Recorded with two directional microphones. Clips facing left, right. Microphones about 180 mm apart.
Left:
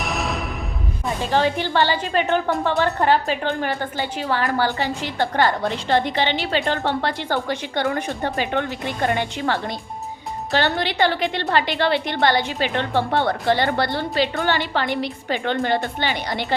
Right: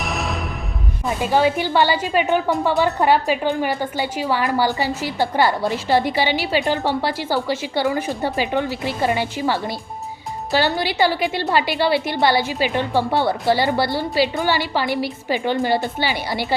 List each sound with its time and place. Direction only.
0.0 s music: centre (ahead or behind)
1.0 s a woman's voice: 10° right (ahead or behind)